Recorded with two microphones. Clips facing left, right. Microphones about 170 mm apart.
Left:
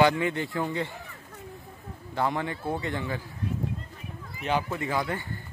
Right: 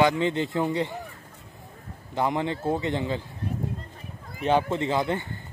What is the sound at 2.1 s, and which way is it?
Speech, 20° right (ahead or behind).